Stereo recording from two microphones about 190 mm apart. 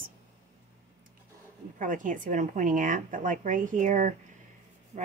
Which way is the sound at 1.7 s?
45° right (ahead or behind).